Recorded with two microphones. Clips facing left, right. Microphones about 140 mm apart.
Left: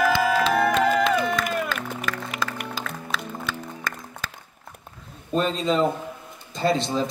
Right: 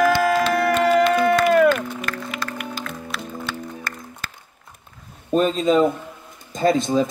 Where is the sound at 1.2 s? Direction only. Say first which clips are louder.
Right 9 dB; 65° right (ahead or behind).